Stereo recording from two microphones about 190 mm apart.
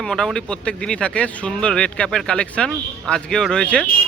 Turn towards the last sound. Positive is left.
turn(degrees=5)  # may be behind; listen again after turning